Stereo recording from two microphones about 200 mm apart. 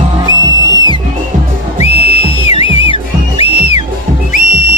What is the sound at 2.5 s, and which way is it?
Music, 25° left (ahead or behind).